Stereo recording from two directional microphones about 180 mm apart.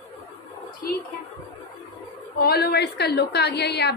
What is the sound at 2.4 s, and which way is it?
A woman's voice, 60° left (ahead or behind).